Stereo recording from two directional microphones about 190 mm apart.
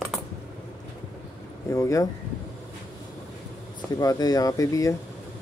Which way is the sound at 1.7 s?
15° left (ahead or behind).